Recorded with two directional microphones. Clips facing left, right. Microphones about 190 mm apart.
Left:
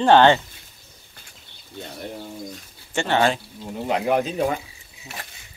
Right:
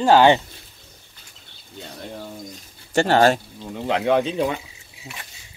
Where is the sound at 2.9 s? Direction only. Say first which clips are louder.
Right 4 dB; 40° right (ahead or behind).